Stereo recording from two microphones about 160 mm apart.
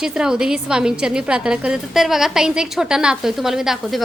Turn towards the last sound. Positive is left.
turn(degrees=0)  # may be behind; listen again after turning